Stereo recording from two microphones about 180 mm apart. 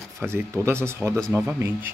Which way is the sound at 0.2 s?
15° right (ahead or behind).